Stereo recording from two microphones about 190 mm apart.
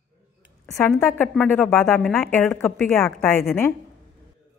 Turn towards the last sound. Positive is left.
turn(degrees=10)  # may be behind; listen again after turning